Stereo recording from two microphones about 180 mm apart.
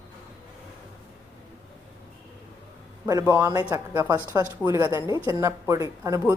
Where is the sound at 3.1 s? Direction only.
20° right (ahead or behind).